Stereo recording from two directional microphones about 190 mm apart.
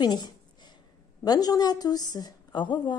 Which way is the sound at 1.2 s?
20° left (ahead or behind).